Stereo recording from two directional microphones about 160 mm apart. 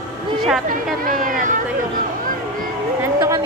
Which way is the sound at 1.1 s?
55° right (ahead or behind).